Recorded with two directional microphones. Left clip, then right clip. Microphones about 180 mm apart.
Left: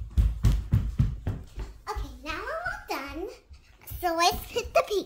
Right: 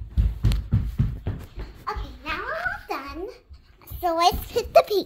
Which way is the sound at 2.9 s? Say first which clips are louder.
Right 2 dB; 10° left (ahead or behind).